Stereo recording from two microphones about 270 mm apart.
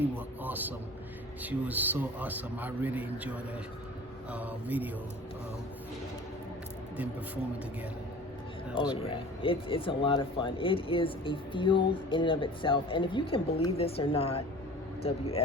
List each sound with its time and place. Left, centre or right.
0.4 s a man's voice: centre
4.3 s mantra: centre
8.7 s speech: centre